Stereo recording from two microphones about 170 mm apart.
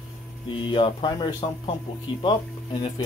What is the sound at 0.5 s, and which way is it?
Speech, 30° left (ahead or behind).